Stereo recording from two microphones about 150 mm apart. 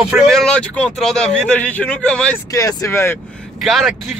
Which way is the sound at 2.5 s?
20° left (ahead or behind).